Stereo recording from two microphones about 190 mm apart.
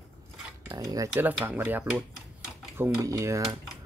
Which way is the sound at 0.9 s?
15° right (ahead or behind).